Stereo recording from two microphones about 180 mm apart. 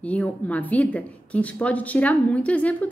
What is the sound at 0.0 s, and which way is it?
A woman's voice, 10° left (ahead or behind).